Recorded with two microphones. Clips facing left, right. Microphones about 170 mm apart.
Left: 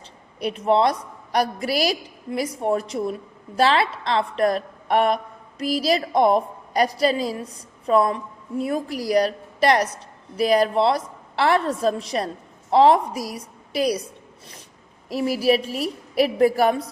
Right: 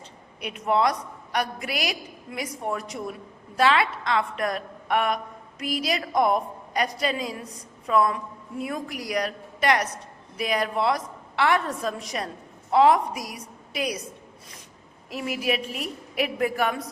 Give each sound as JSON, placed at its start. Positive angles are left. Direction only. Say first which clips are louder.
{"t": 0.3, "sound": "a woman's voice", "louder": "left 5 dB", "side_deg": 35}
{"t": 15.1, "sound": "a woman's voice", "louder": "left 7 dB", "side_deg": 35}